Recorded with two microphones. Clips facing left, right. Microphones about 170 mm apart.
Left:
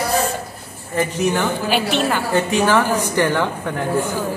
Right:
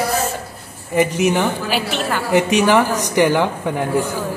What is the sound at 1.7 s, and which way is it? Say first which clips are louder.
Speech: left 2 dB; 5° right (ahead or behind).